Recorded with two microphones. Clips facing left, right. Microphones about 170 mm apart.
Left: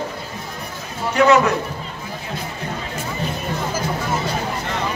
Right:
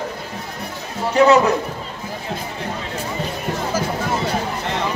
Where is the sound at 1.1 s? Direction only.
35° right (ahead or behind).